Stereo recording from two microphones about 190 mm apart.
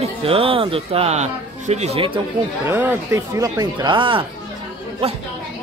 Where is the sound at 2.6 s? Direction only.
10° right (ahead or behind).